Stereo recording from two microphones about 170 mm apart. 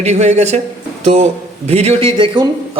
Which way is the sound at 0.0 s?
40° right (ahead or behind).